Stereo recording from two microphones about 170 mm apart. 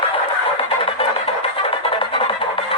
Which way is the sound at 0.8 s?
35° left (ahead or behind).